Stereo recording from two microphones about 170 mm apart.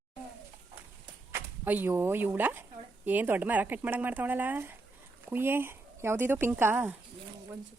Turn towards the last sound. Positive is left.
turn(degrees=-10)  # may be behind; listen again after turning